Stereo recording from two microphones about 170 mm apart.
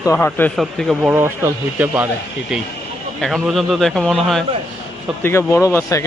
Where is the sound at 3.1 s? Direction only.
Centre (ahead or behind).